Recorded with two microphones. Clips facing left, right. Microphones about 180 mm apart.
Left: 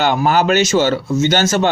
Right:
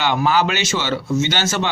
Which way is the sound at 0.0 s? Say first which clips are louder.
Left 3 dB; 45° left (ahead or behind).